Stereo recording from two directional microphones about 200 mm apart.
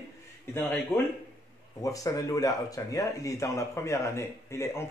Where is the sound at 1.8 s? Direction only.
15° left (ahead or behind).